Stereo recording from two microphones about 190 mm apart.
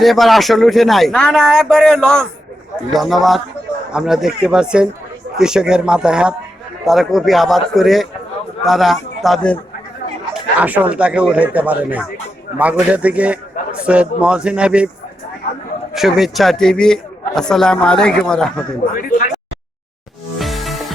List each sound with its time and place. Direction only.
0.0 s a man's voice: centre (ahead or behind)
10.6 s a man's voice: 10° right (ahead or behind)
15.9 s a man's voice: centre (ahead or behind)
18.9 s speech: 45° left (ahead or behind)
20.4 s music: centre (ahead or behind)